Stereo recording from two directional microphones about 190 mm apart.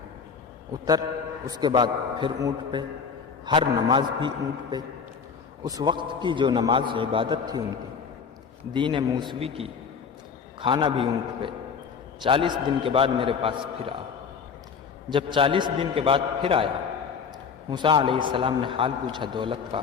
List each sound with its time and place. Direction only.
0.7 s a man's voice: 20° right (ahead or behind)
5.6 s a man's voice: 20° right (ahead or behind)
8.7 s a man's voice: 25° right (ahead or behind)
15.1 s a man's voice: 25° right (ahead or behind)
17.7 s a man's voice: 25° right (ahead or behind)